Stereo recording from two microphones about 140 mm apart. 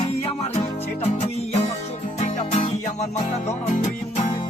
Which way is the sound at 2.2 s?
55° left (ahead or behind).